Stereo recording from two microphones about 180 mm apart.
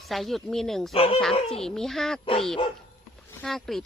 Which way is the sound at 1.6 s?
Centre (ahead or behind).